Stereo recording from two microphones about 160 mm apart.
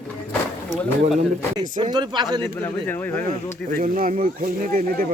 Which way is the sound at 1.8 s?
30° right (ahead or behind).